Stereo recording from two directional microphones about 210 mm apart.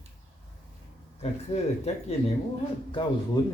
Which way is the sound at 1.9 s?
30° left (ahead or behind).